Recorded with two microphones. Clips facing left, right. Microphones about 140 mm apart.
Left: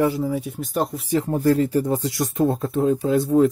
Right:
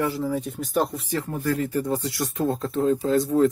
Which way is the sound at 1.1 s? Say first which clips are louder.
Left 6 dB; 25° left (ahead or behind).